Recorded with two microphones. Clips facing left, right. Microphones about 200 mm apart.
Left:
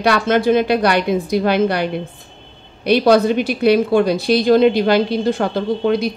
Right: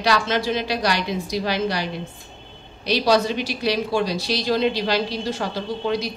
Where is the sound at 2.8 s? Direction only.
55° left (ahead or behind).